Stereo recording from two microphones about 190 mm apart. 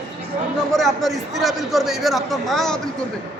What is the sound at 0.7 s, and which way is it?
A man's voice, centre (ahead or behind).